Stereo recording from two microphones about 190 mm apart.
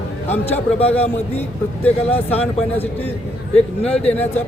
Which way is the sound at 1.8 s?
10° left (ahead or behind).